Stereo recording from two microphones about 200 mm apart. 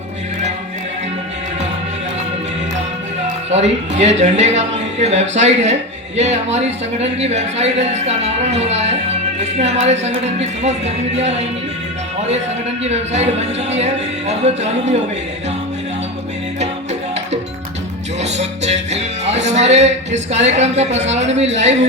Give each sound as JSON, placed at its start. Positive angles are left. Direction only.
{"t": 3.5, "sound": "speech", "side_deg": -35}
{"t": 12.8, "sound": "speech", "side_deg": -35}
{"t": 18.2, "sound": "music", "side_deg": -35}
{"t": 21.3, "sound": "speech", "side_deg": -35}